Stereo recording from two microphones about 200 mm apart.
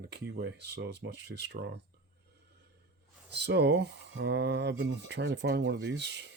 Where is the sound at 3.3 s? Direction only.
55° right (ahead or behind).